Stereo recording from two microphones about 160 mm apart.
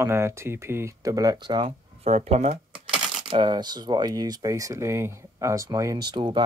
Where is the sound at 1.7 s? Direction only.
40° right (ahead or behind).